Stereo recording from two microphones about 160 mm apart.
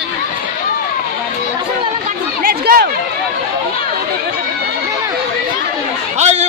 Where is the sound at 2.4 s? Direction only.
65° right (ahead or behind).